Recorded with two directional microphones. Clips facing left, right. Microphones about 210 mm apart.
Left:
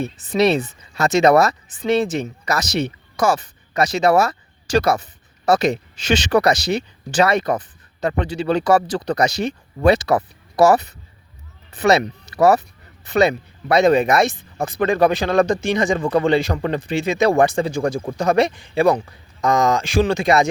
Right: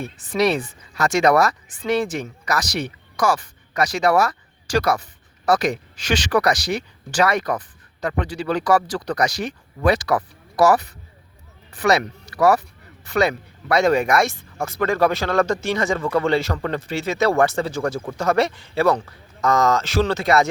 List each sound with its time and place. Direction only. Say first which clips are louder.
0.0 s speech: left 3 dB; 25° left (ahead or behind)